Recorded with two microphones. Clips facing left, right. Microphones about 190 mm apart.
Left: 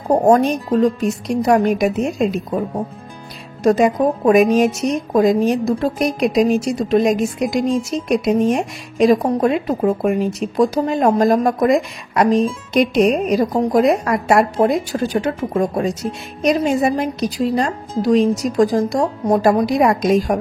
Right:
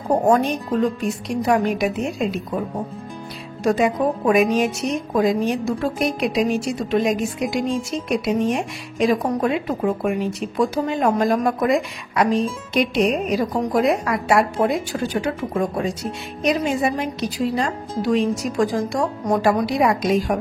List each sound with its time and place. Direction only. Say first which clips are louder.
0.2 s speech: left 4 dB; 40° left (ahead or behind)
3.6 s speech: left 4 dB; 40° left (ahead or behind)